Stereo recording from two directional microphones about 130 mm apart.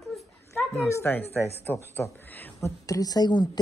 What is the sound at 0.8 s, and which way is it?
A woman's voice, 20° left (ahead or behind).